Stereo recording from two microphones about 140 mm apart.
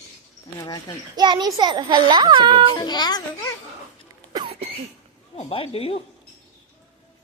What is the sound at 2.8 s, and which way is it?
Speech, 30° left (ahead or behind).